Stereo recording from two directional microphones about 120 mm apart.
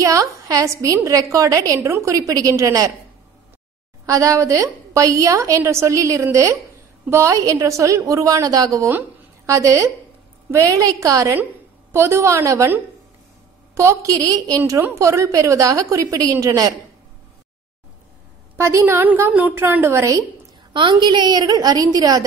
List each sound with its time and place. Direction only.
0.0 s a woman's voice: 30° right (ahead or behind)
4.0 s a woman's voice: 25° right (ahead or behind)
18.6 s a woman's voice: 25° right (ahead or behind)
20.7 s a woman's voice: 45° right (ahead or behind)